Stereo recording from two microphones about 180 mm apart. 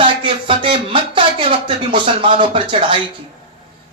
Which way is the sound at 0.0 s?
30° right (ahead or behind).